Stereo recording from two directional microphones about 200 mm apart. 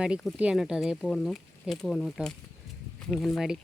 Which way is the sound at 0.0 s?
Centre (ahead or behind).